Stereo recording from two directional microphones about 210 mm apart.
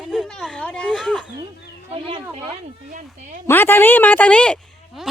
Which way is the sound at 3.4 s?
10° left (ahead or behind).